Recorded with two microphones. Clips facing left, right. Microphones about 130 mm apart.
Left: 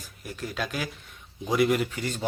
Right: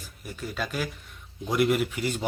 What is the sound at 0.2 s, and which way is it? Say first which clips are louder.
A man's voice: left 1 dB; centre (ahead or behind).